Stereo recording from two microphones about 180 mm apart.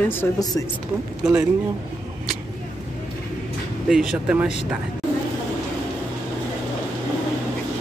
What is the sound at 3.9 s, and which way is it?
Speech, 5° right (ahead or behind).